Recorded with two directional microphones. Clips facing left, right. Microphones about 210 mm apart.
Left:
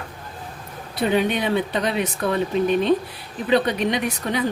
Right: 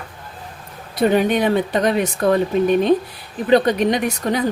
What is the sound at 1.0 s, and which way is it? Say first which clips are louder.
A woman's voice: right 5 dB; 45° right (ahead or behind).